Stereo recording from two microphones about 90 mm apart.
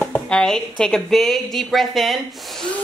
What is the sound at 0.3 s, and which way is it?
A woman's voice, 10° left (ahead or behind).